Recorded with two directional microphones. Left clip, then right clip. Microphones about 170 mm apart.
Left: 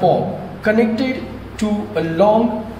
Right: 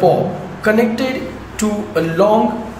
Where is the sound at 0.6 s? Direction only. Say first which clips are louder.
Right 2 dB; 25° right (ahead or behind).